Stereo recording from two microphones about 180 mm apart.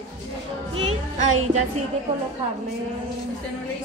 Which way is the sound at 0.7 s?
35° right (ahead or behind).